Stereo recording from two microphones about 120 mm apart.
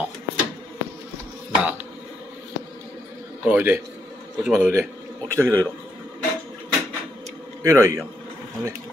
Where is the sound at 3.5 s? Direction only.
15° right (ahead or behind).